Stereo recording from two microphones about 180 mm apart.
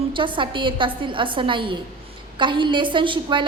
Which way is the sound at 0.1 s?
25° right (ahead or behind).